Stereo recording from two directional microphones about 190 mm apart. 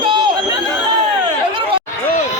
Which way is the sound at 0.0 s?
25° right (ahead or behind).